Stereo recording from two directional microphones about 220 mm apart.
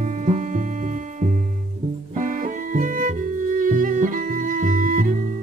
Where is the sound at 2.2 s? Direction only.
35° right (ahead or behind).